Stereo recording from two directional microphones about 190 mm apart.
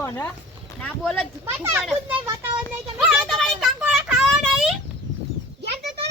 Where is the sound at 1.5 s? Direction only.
10° right (ahead or behind).